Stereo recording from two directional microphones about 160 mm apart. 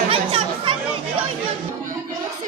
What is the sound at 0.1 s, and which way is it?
Chatter, 35° right (ahead or behind).